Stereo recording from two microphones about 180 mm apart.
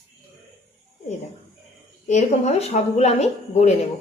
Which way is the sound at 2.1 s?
40° left (ahead or behind).